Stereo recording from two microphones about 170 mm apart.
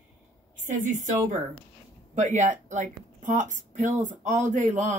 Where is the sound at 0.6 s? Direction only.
50° right (ahead or behind).